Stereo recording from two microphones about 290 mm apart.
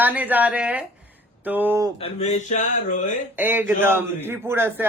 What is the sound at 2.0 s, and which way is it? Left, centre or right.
Speech, left.